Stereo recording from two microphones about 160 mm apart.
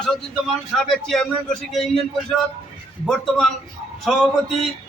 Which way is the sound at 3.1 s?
5° left (ahead or behind).